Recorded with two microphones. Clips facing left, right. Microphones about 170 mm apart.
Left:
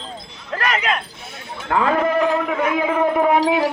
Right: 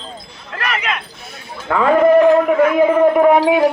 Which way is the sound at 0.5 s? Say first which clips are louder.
Left 1 dB; 35° left (ahead or behind).